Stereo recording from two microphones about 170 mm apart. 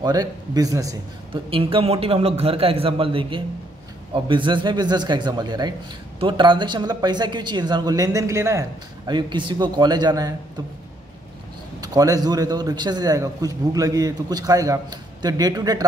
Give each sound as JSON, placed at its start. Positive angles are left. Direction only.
{"t": 0.0, "sound": "a man's voice", "side_deg": -20}
{"t": 1.5, "sound": "a man's voice", "side_deg": -30}
{"t": 11.8, "sound": "a man's voice", "side_deg": -20}